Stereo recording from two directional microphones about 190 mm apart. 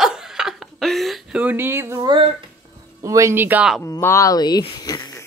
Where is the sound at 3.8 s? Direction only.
15° left (ahead or behind).